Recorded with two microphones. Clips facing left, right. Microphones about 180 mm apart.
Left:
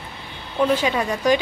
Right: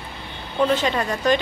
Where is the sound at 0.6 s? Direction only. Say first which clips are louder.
Left 1 dB; 10° left (ahead or behind).